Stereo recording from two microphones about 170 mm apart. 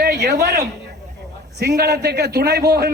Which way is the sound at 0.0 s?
60° right (ahead or behind).